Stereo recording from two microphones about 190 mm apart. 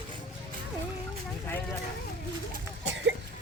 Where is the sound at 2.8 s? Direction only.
70° right (ahead or behind).